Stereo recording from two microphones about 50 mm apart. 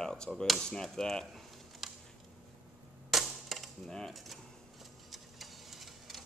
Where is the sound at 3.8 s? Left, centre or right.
Centre.